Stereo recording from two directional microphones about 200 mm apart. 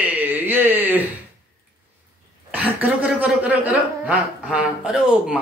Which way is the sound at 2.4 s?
5° right (ahead or behind).